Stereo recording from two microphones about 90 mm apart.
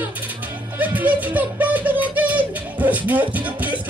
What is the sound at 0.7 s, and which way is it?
Music, 20° right (ahead or behind).